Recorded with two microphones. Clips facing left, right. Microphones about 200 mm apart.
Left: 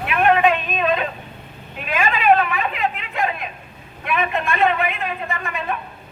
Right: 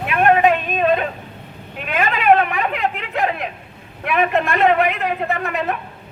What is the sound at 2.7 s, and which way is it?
A man's voice, 65° right (ahead or behind).